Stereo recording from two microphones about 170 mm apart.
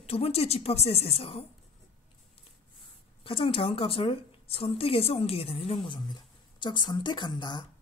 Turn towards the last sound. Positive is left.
turn(degrees=25)  # may be behind; listen again after turning